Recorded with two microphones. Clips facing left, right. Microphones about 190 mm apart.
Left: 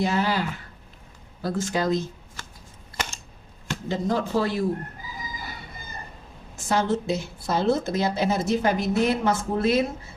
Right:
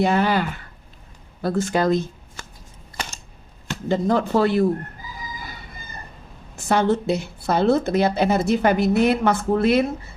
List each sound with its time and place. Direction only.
0.0 s speech: 55° right (ahead or behind)
3.8 s speech: 55° right (ahead or behind)
6.7 s speech: 60° right (ahead or behind)